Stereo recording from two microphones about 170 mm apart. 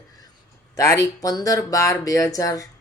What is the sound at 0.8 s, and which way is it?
Speech, 20° left (ahead or behind).